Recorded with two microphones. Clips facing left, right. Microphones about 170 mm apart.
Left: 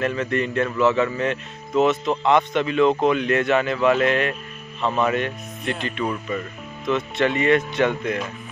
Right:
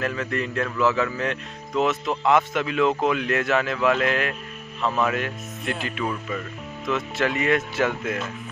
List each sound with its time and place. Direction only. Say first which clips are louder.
0.0 s speech: left 4 dB; centre (ahead or behind)